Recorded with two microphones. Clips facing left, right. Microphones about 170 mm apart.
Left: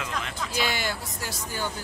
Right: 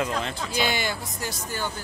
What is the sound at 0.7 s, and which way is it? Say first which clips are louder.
Speech: right 2 dB; 5° left (ahead or behind).